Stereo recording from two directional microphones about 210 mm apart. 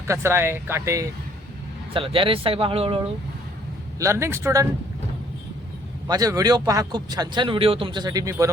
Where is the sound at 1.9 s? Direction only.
25° right (ahead or behind).